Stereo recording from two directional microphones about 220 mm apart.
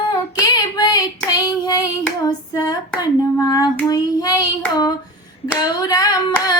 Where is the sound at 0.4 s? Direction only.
15° left (ahead or behind).